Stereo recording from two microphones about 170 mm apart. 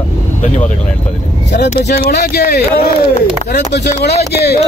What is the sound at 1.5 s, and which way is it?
Speech, 80° left.